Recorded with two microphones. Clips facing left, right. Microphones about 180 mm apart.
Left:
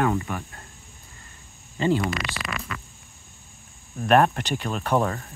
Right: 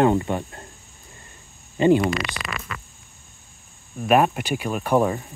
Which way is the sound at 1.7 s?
20° right (ahead or behind).